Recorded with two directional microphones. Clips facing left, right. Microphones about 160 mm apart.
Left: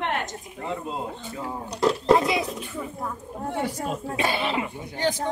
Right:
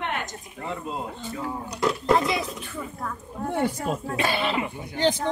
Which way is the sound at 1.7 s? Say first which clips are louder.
Left 3 dB; 30° left (ahead or behind).